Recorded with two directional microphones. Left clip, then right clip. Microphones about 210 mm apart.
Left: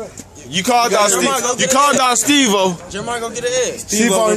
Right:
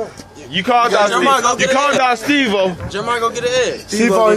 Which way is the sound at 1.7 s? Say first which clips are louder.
Left 1 dB; 30° left (ahead or behind).